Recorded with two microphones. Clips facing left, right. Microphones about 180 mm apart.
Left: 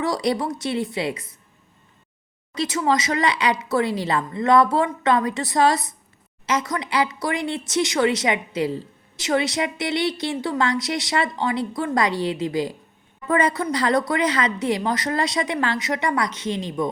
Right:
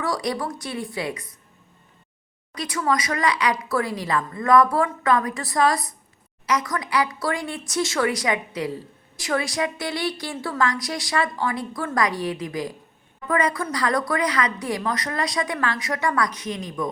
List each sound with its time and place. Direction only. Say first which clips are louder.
0.0 s a woman's voice: left 3 dB; 25° left (ahead or behind)
2.6 s a woman's voice: left 3 dB; 25° left (ahead or behind)